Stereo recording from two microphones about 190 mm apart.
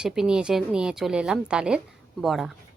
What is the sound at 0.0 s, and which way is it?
A woman's voice, 5° right (ahead or behind).